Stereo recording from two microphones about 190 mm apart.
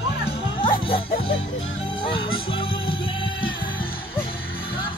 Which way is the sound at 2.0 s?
25° left (ahead or behind).